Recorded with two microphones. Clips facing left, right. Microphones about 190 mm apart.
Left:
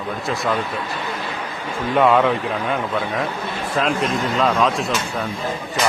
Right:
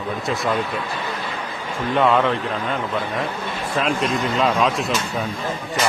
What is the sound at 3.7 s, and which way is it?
A man's voice, centre (ahead or behind).